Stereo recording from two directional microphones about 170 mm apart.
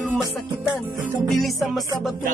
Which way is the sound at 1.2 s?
Centre (ahead or behind).